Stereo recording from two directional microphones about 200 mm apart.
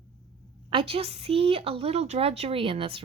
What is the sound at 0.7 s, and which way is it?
A woman's voice, 30° right (ahead or behind).